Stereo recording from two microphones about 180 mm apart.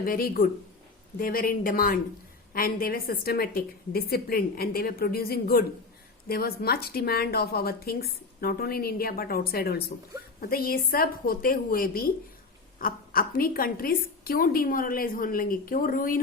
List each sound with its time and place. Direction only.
0.0 s a woman's voice: 55° left (ahead or behind)